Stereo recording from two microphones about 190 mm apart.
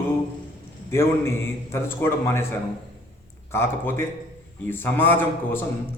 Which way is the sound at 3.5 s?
10° left (ahead or behind).